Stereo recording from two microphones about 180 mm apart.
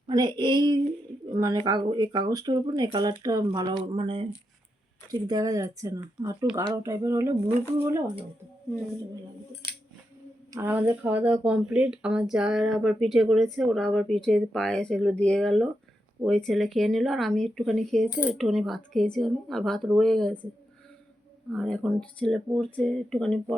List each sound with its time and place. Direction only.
0.1 s speech: 25° right (ahead or behind)
10.5 s speech: 10° right (ahead or behind)
21.5 s speech: centre (ahead or behind)